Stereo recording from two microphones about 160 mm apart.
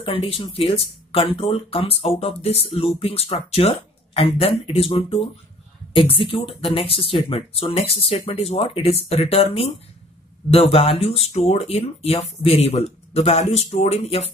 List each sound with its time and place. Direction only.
0.0 s speech: 35° left (ahead or behind)